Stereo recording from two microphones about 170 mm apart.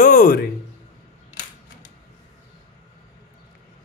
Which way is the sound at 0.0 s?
55° left (ahead or behind).